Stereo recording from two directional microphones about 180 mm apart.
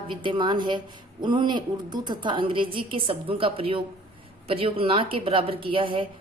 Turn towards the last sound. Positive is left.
turn(degrees=-30)  # may be behind; listen again after turning